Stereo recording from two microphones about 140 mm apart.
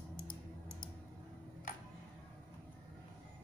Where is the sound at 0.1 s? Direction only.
80° left.